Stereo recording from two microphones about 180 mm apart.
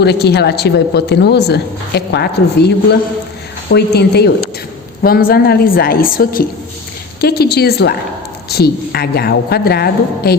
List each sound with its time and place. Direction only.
0.0 s speech: 65° left (ahead or behind)